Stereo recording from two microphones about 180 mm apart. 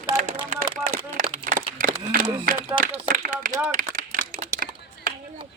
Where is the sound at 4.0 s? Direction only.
45° right (ahead or behind).